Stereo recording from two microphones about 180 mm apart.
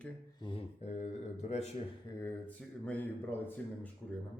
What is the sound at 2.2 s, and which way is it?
Speech, 10° left (ahead or behind).